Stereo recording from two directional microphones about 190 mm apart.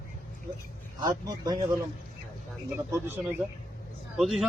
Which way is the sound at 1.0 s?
20° right (ahead or behind).